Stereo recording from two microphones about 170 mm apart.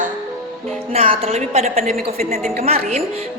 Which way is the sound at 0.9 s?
35° right (ahead or behind).